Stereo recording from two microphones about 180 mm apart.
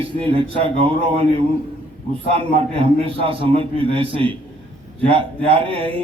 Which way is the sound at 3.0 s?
30° right (ahead or behind).